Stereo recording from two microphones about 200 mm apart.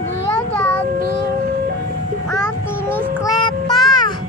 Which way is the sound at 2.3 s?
10° left (ahead or behind).